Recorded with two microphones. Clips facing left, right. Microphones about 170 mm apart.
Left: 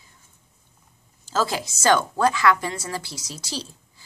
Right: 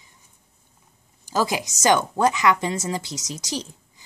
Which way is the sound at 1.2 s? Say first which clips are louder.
Right 1 dB; 15° right (ahead or behind).